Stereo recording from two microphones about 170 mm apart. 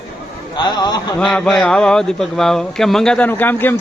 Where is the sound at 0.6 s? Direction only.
25° left (ahead or behind).